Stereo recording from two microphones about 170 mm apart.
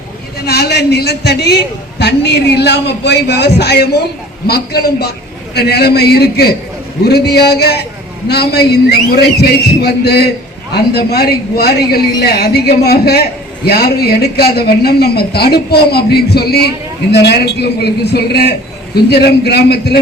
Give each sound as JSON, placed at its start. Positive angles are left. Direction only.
{"t": 0.4, "sound": "a man's voice", "side_deg": 70}